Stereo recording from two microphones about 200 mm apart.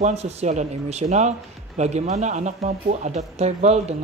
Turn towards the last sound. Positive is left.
turn(degrees=-35)  # may be behind; listen again after turning